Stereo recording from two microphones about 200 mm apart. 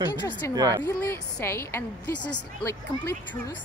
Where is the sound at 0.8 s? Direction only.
15° left (ahead or behind).